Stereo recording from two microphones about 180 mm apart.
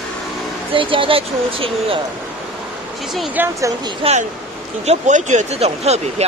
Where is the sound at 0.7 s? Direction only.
30° right (ahead or behind).